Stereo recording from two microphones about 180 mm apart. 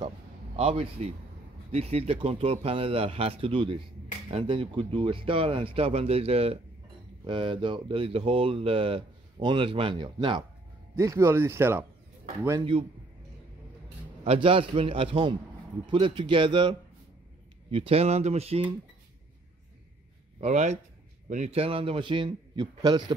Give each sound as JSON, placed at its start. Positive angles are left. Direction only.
{"t": 0.6, "sound": "speech", "side_deg": -30}
{"t": 11.0, "sound": "speech", "side_deg": -15}
{"t": 12.4, "sound": "speech", "side_deg": -25}
{"t": 14.2, "sound": "speech", "side_deg": -30}
{"t": 20.3, "sound": "speech", "side_deg": -40}